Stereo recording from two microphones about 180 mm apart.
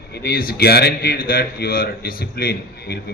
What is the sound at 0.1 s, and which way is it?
A man's voice, 60° left (ahead or behind).